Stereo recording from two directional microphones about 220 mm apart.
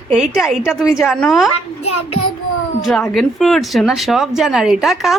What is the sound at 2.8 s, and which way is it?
Speech, centre (ahead or behind).